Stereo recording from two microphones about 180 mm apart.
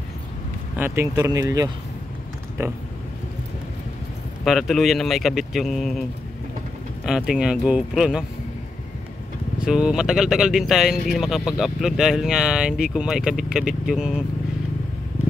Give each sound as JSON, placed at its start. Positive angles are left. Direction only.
{"t": 0.7, "sound": "speech", "side_deg": -10}
{"t": 4.5, "sound": "speech", "side_deg": 0}
{"t": 7.1, "sound": "speech", "side_deg": -5}
{"t": 9.6, "sound": "speech", "side_deg": -5}